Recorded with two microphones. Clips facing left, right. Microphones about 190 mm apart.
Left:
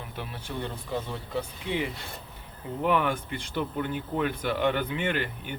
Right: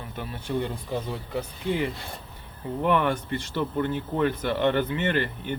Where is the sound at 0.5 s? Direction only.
5° right (ahead or behind).